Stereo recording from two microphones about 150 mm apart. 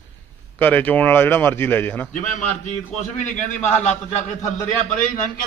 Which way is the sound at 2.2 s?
55° left (ahead or behind).